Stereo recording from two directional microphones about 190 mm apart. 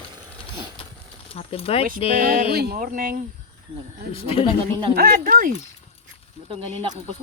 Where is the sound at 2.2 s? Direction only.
50° right (ahead or behind).